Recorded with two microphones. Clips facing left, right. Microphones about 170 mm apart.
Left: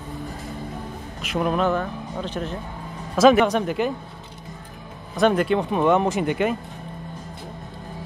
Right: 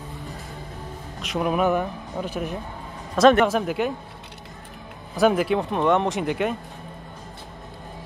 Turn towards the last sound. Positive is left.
turn(degrees=0)  # may be behind; listen again after turning